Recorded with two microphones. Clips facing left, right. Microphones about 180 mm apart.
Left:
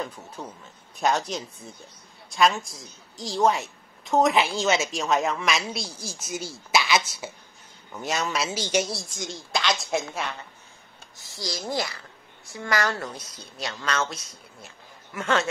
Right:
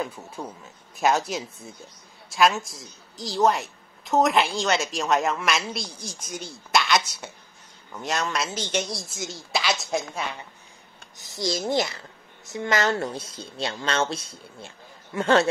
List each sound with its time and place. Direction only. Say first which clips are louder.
0.0 s a woman's voice: right 2 dB; 10° right (ahead or behind); by 9.0 s 10° left (ahead or behind)
9.1 s a woman's voice: right 1 dB; 5° right (ahead or behind)
11.1 s a woman's voice: right 7 dB; 20° right (ahead or behind)